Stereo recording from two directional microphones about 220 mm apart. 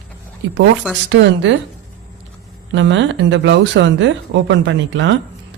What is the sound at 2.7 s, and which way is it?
Speech, 55° right (ahead or behind).